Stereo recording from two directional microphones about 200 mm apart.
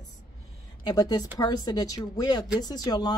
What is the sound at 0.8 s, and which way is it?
A woman's voice, 20° left (ahead or behind).